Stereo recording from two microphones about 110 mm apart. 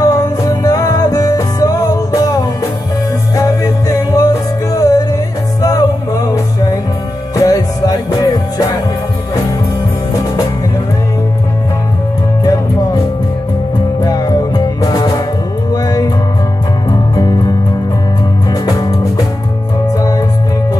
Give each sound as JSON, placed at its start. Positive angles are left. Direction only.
{"t": 0.0, "sound": "music", "side_deg": 35}
{"t": 14.0, "sound": "music", "side_deg": 35}